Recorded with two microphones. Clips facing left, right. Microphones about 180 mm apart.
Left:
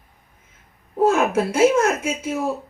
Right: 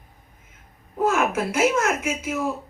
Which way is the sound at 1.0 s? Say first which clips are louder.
Left 4 dB; 30° left (ahead or behind).